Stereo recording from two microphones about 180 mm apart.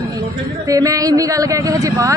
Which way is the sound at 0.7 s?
20° right (ahead or behind).